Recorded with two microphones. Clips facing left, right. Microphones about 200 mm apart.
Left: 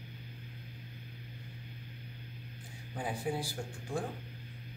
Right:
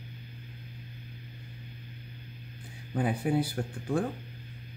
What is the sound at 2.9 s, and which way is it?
Speech, 60° right (ahead or behind).